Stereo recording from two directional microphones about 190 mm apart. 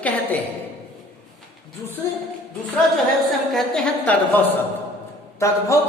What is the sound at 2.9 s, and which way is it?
A woman's voice, centre (ahead or behind).